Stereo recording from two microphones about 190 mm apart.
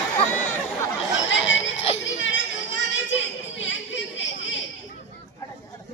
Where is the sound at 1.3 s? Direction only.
75° left (ahead or behind).